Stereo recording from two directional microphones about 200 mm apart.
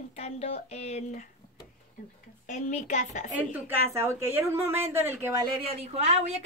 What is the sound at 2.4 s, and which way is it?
Speech, 35° left (ahead or behind).